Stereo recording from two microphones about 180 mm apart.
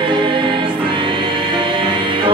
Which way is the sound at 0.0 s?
25° right (ahead or behind).